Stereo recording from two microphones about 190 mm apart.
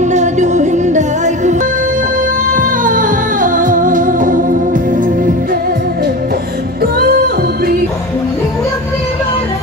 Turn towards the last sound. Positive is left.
turn(degrees=-55)  # may be behind; listen again after turning